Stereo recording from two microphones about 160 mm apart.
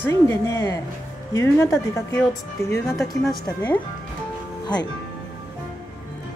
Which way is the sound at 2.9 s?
Centre (ahead or behind).